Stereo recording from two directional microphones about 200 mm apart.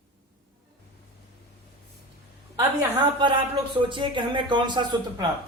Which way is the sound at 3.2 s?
25° right (ahead or behind).